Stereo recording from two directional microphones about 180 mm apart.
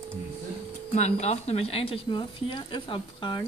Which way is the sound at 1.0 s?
40° left (ahead or behind).